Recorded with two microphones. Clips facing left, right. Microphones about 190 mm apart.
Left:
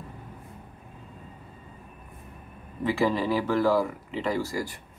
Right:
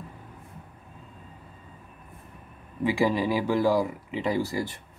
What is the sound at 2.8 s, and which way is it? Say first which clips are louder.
Speech: right 1 dB; 15° right (ahead or behind).